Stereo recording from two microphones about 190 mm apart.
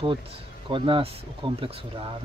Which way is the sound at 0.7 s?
25° right (ahead or behind).